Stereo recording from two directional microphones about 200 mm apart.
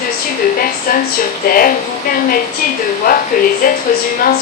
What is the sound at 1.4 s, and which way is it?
Speech, 45° left (ahead or behind).